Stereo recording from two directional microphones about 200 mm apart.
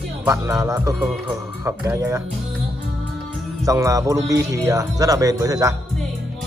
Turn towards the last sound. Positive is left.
turn(degrees=-15)  # may be behind; listen again after turning